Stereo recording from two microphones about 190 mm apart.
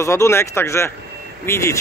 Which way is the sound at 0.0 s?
15° left (ahead or behind).